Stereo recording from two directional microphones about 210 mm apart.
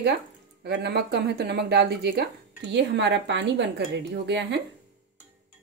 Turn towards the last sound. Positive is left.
turn(degrees=-55)  # may be behind; listen again after turning